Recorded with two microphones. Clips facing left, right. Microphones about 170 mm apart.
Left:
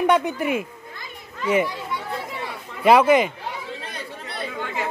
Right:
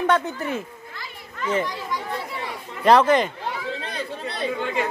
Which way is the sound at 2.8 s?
10° left (ahead or behind).